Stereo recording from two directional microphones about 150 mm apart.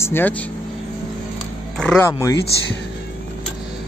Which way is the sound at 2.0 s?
20° left (ahead or behind).